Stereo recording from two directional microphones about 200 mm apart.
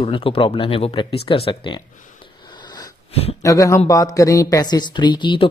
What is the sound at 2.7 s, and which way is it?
Wheeze, 25° left (ahead or behind).